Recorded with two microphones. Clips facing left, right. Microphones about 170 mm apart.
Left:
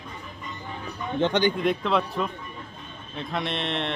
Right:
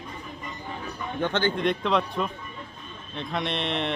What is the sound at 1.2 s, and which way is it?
Speech, 15° left (ahead or behind).